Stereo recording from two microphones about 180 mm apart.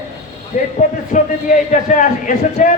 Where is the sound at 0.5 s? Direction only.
50° left (ahead or behind).